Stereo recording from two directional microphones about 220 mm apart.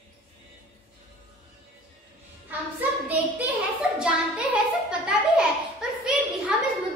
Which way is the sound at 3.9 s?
5° right (ahead or behind).